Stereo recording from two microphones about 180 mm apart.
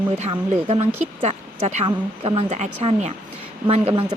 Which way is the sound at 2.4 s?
40° right (ahead or behind).